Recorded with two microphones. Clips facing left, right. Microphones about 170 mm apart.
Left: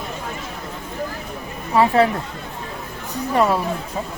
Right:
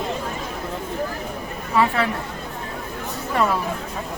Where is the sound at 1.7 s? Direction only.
30° left (ahead or behind).